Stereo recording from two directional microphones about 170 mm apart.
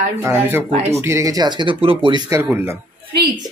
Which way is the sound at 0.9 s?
15° right (ahead or behind).